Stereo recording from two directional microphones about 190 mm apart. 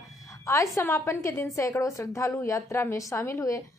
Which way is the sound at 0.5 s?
15° left (ahead or behind).